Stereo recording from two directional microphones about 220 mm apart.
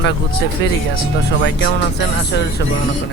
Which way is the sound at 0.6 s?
50° left (ahead or behind).